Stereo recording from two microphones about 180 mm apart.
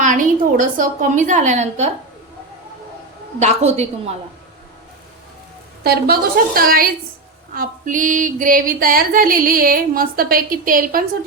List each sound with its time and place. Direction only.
0.0 s female singing: 45° right (ahead or behind)
3.4 s a woman's voice: 40° right (ahead or behind)
5.8 s a woman's voice: 60° right (ahead or behind)
7.5 s female singing: 50° right (ahead or behind)